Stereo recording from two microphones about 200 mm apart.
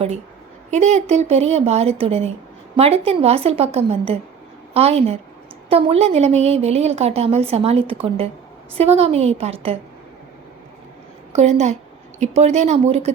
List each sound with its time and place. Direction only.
0.7 s a woman's voice: 35° right (ahead or behind)
11.3 s a woman's voice: 35° right (ahead or behind)